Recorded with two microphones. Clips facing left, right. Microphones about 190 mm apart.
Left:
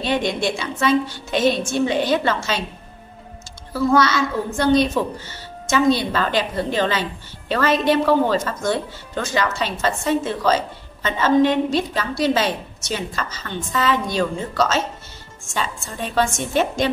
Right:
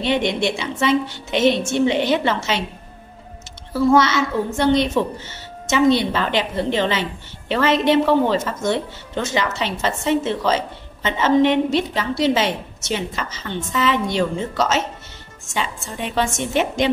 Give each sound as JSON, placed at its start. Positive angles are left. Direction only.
{"t": 0.0, "sound": "a woman's voice", "side_deg": -20}
{"t": 3.9, "sound": "a woman's voice", "side_deg": -20}